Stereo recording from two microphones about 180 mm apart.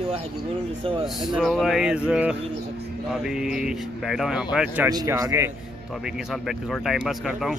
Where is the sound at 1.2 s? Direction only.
Centre (ahead or behind).